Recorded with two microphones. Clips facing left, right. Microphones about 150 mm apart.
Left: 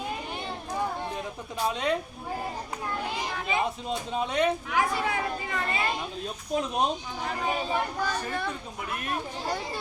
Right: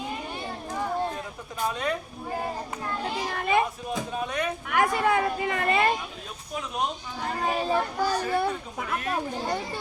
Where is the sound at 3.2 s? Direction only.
55° right (ahead or behind).